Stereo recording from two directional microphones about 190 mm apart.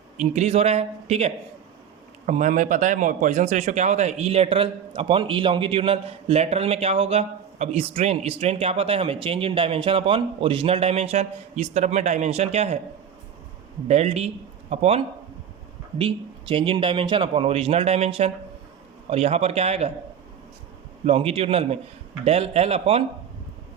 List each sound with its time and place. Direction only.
0.2 s speech: 35° right (ahead or behind)
13.8 s a man's voice: 35° right (ahead or behind)
21.0 s speech: 30° right (ahead or behind)